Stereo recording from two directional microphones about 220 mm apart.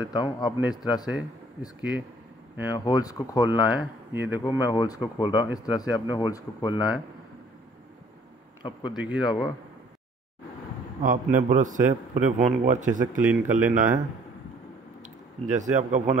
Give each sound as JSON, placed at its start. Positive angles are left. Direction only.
{"t": 0.0, "sound": "a man's voice", "side_deg": 20}
{"t": 1.8, "sound": "speech", "side_deg": -5}
{"t": 2.8, "sound": "speech", "side_deg": 15}
{"t": 3.4, "sound": "speech", "side_deg": -10}
{"t": 4.4, "sound": "speech", "side_deg": 15}
{"t": 8.9, "sound": "speech", "side_deg": -5}
{"t": 9.2, "sound": "a man's voice", "side_deg": 20}
{"t": 11.0, "sound": "a man's voice", "side_deg": -35}
{"t": 13.3, "sound": "speech", "side_deg": -10}
{"t": 15.5, "sound": "a man's voice", "side_deg": -35}